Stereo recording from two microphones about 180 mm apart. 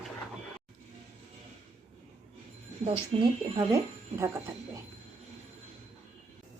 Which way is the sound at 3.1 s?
30° right (ahead or behind).